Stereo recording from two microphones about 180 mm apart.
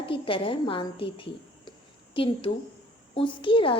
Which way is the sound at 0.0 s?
30° left (ahead or behind).